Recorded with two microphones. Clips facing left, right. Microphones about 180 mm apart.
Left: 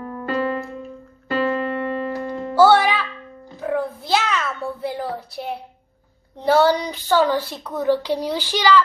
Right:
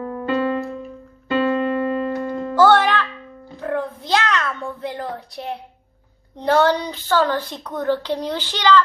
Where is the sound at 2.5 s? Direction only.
10° left (ahead or behind).